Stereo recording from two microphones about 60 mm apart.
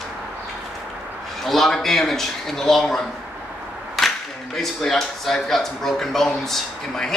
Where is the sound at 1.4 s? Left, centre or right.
Centre.